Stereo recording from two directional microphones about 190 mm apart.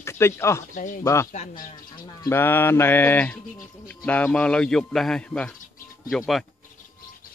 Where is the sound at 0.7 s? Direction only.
45° left (ahead or behind).